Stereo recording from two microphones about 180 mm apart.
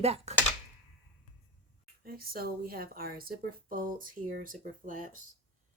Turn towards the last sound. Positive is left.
turn(degrees=-50)  # may be behind; listen again after turning